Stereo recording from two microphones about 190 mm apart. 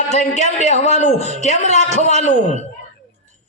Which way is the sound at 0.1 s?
35° left (ahead or behind).